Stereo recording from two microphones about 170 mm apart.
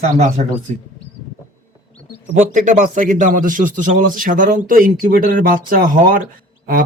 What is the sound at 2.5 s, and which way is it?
A man's voice, 50° right (ahead or behind).